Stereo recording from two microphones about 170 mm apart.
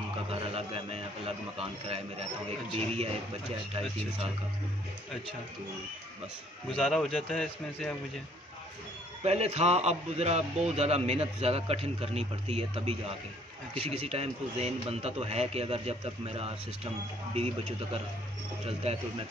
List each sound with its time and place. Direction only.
0.3 s a man's voice: 35° right (ahead or behind)
6.7 s a man's voice: centre (ahead or behind)
9.2 s a man's voice: 40° right (ahead or behind)
18.7 s a man's voice: 35° right (ahead or behind)